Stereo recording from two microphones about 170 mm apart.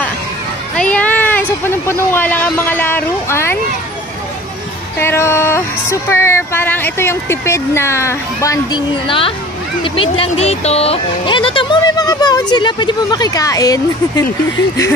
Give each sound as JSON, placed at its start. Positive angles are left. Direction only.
{"t": 0.7, "sound": "speech", "side_deg": 5}
{"t": 4.9, "sound": "speech", "side_deg": 15}
{"t": 9.0, "sound": "a child's voice", "side_deg": 30}